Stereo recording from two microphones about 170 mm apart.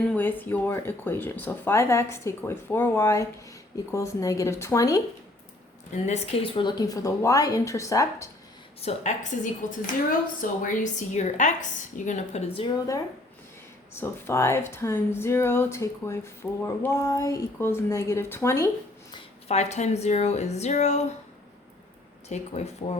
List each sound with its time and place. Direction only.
0.0 s speech: 10° left (ahead or behind)
6.1 s speech: 30° left (ahead or behind)
8.8 s a woman's voice: 40° left (ahead or behind)
13.9 s speech: 15° left (ahead or behind)
19.5 s a woman's voice: 40° left (ahead or behind)
22.3 s a woman's voice: 40° left (ahead or behind)